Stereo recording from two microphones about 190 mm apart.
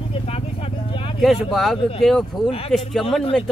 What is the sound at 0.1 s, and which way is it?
Vehicle, 30° left (ahead or behind).